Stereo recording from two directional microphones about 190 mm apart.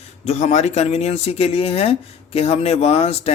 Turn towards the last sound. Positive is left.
turn(degrees=30)  # may be behind; listen again after turning